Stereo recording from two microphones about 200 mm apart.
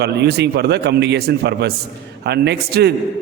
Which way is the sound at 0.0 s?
55° right (ahead or behind).